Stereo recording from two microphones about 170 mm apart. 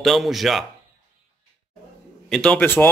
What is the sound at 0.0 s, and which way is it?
Speech, centre (ahead or behind).